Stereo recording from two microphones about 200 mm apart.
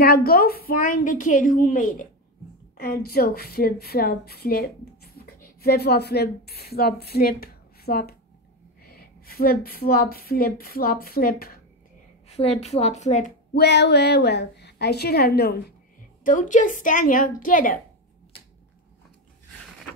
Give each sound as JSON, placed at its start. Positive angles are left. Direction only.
{"t": 0.0, "sound": "a woman's voice", "side_deg": 50}
{"t": 12.3, "sound": "a woman's voice", "side_deg": 30}
{"t": 13.6, "sound": "a woman's voice", "side_deg": 55}
{"t": 16.3, "sound": "a woman's voice", "side_deg": 40}